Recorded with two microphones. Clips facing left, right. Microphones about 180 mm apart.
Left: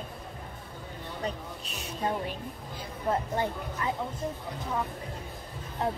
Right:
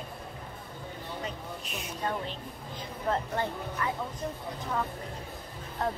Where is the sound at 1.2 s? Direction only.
35° left (ahead or behind).